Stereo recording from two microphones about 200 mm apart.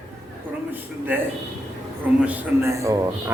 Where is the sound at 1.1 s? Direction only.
10° right (ahead or behind).